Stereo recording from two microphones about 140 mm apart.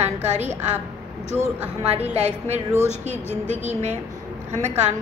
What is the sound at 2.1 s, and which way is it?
A woman's voice, 50° right (ahead or behind).